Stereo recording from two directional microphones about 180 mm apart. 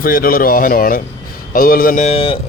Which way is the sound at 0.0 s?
55° left (ahead or behind).